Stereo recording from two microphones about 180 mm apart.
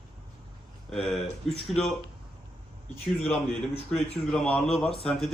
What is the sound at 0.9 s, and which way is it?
Speech, centre (ahead or behind).